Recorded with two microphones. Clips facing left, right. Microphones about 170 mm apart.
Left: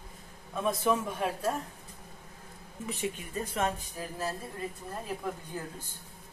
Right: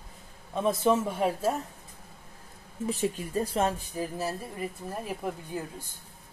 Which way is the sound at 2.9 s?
35° right (ahead or behind).